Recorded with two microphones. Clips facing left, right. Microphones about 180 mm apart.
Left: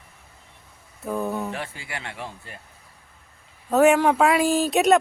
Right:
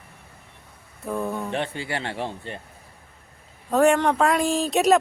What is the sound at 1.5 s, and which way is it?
Speech, 25° right (ahead or behind).